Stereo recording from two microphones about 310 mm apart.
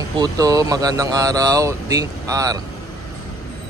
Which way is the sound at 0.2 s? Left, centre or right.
Centre.